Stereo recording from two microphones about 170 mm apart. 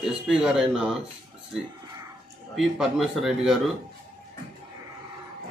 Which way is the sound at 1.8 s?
20° right (ahead or behind).